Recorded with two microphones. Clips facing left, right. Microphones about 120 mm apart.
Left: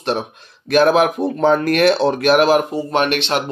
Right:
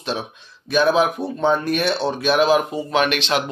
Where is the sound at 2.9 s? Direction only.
50° left (ahead or behind).